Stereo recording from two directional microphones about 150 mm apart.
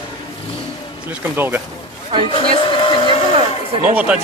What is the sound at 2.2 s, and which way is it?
Speech, 35° left (ahead or behind).